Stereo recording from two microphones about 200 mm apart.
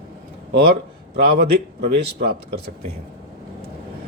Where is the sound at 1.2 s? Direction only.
50° right (ahead or behind).